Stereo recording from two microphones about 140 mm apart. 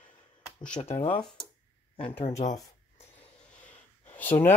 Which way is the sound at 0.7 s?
50° left (ahead or behind).